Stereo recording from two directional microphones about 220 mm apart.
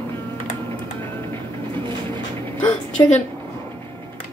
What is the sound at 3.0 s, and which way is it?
Speech, 15° left (ahead or behind).